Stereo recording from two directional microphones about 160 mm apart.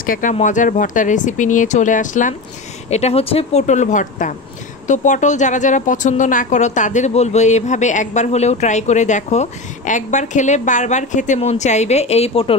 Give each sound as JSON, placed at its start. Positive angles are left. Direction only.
{"t": 0.0, "sound": "a woman's voice", "side_deg": 55}
{"t": 2.9, "sound": "a woman's voice", "side_deg": 40}